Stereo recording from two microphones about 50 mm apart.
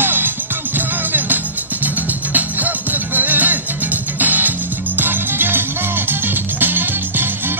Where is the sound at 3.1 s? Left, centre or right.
Right.